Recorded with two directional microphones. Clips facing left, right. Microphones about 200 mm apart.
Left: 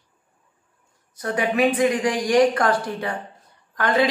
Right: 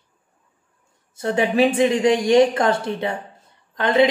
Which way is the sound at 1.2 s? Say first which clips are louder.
Right 3 dB; 25° right (ahead or behind).